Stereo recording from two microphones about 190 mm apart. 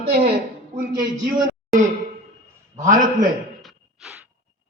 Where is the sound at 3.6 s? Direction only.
5° right (ahead or behind).